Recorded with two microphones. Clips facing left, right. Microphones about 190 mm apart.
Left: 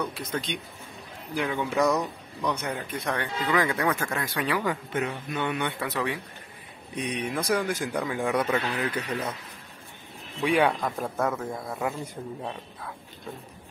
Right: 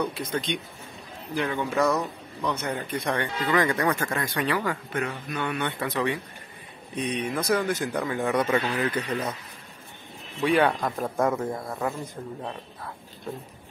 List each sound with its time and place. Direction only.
0.1 s speech: 5° left (ahead or behind)
4.6 s speech: 20° left (ahead or behind)
5.9 s speech: 5° left (ahead or behind)
10.4 s speech: 10° left (ahead or behind)
10.8 s speech: 5° right (ahead or behind)